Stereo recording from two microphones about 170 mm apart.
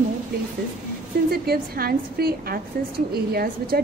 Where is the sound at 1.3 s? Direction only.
65° right (ahead or behind).